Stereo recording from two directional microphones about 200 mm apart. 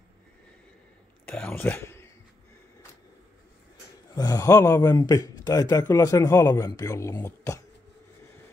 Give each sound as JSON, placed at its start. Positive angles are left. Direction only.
{"t": 1.2, "sound": "speech", "side_deg": 5}
{"t": 4.1, "sound": "speech", "side_deg": 20}